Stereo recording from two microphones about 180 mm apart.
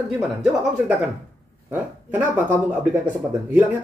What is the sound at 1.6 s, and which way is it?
Speech, 10° right (ahead or behind).